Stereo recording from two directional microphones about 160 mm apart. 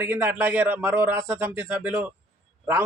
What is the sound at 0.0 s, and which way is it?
A man's voice, 15° right (ahead or behind).